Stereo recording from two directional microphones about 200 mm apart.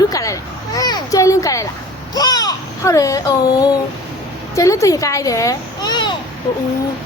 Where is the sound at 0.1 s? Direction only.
15° left (ahead or behind).